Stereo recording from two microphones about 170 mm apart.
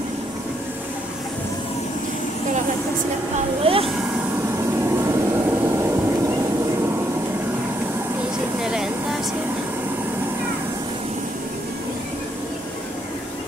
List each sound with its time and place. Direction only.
3.7 s speech: 35° right (ahead or behind)
4.9 s vehicle: 15° right (ahead or behind)
8.6 s a sound: 5° right (ahead or behind)